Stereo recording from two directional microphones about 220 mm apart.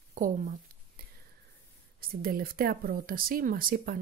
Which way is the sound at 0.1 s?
40° right (ahead or behind).